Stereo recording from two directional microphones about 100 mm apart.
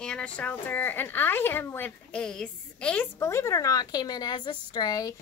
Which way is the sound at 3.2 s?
30° left (ahead or behind).